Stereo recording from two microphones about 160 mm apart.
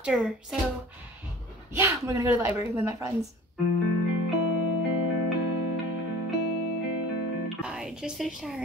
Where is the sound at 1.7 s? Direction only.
15° right (ahead or behind).